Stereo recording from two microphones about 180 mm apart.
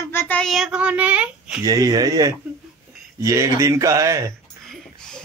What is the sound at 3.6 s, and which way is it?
Speech, 15° right (ahead or behind).